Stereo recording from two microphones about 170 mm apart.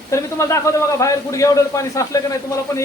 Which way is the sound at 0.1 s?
15° left (ahead or behind).